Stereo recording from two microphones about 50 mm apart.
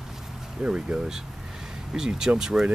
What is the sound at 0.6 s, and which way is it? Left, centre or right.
Speech, centre.